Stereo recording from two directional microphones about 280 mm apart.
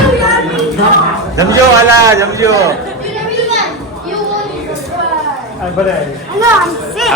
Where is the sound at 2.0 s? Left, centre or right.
Centre.